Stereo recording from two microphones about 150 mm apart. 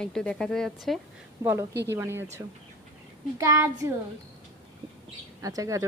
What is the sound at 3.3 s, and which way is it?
Speech, 20° right (ahead or behind).